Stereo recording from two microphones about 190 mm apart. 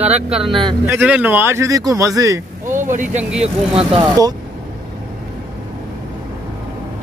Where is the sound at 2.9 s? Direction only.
45° right (ahead or behind).